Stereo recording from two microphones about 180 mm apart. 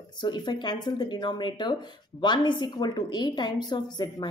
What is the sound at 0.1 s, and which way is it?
Speech, 25° left (ahead or behind).